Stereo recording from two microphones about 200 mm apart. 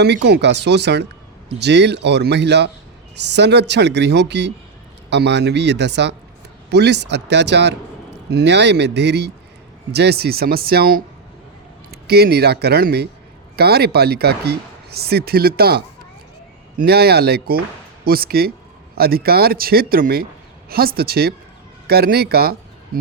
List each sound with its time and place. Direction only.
0.0 s a man's voice: 55° right (ahead or behind)